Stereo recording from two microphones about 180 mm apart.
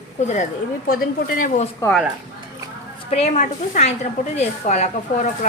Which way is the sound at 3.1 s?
40° left (ahead or behind).